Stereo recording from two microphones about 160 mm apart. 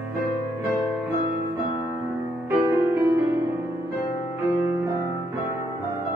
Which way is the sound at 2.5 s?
10° right (ahead or behind).